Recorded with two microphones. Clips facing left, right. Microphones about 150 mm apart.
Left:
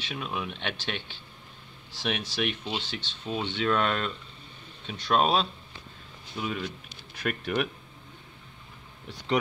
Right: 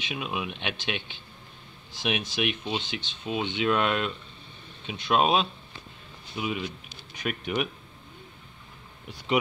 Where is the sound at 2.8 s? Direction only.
30° left (ahead or behind).